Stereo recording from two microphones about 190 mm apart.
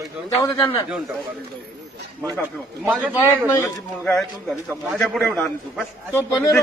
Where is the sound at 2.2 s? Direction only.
10° right (ahead or behind).